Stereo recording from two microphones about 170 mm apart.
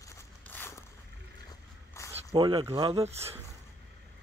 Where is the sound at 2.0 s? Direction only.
15° left (ahead or behind).